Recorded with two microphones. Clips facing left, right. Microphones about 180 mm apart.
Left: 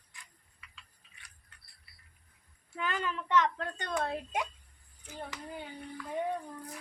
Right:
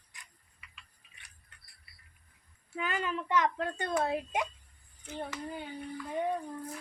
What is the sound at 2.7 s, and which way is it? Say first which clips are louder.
A woman's voice: right 1 dB; 5° right (ahead or behind).